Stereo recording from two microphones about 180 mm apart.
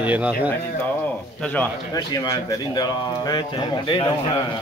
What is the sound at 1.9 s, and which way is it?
Speech, 20° left (ahead or behind).